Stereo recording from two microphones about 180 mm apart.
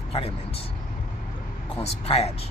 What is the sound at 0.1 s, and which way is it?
Speech, 30° left (ahead or behind).